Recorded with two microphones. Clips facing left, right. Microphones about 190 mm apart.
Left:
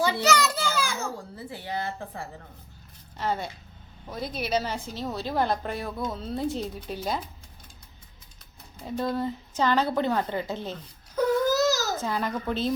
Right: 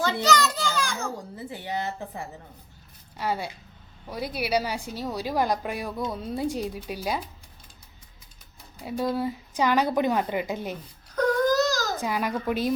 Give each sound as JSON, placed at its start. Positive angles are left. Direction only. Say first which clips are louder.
{"t": 0.0, "sound": "children playing", "louder": "even", "side_deg": 10}
{"t": 1.1, "sound": "a woman's voice", "louder": "right 2 dB", "side_deg": -20}
{"t": 3.2, "sound": "a woman's voice", "louder": "even", "side_deg": -10}
{"t": 8.8, "sound": "a woman's voice", "louder": "right 1 dB", "side_deg": -10}
{"t": 11.1, "sound": "baby cry", "louder": "right 1 dB", "side_deg": 5}
{"t": 11.9, "sound": "a woman's voice", "louder": "right 1 dB", "side_deg": -10}